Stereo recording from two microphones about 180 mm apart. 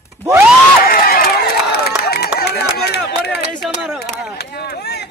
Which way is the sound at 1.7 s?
60° left (ahead or behind).